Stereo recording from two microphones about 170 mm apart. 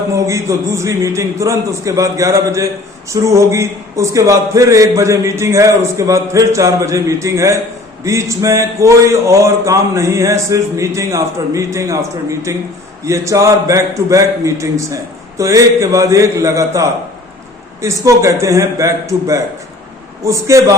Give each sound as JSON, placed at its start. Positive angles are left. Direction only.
{"t": 0.1, "sound": "a man's voice", "side_deg": -20}